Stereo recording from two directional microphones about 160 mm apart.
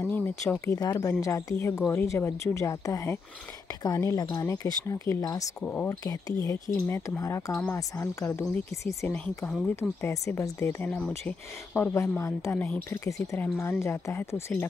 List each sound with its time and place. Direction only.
0.0 s a woman's voice: 10° left (ahead or behind)
5.6 s speech: 10° left (ahead or behind)
5.9 s a woman's voice: 20° left (ahead or behind)